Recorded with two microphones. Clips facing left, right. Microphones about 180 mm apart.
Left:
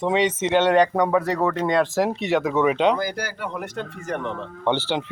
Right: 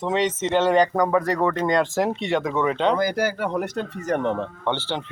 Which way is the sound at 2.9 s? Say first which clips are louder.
Right 5 dB; 45° right (ahead or behind).